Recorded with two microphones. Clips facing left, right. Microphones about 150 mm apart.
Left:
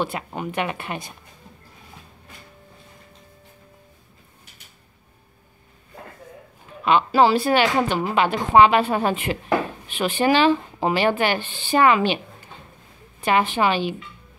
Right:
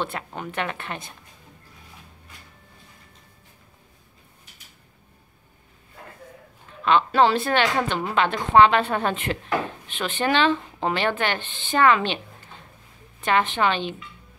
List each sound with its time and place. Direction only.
0.0 s speech: 10° left (ahead or behind)
6.8 s speech: 10° left (ahead or behind)
13.2 s speech: 10° left (ahead or behind)